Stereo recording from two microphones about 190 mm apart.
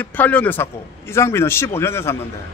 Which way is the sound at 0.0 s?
10° left (ahead or behind).